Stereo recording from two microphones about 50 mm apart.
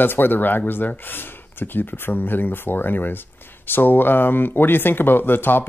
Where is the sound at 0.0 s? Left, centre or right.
Left.